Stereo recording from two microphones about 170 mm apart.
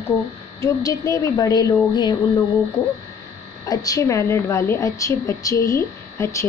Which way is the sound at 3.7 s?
20° left (ahead or behind).